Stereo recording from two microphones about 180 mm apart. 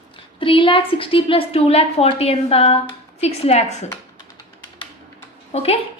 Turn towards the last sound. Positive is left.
turn(degrees=35)  # may be behind; listen again after turning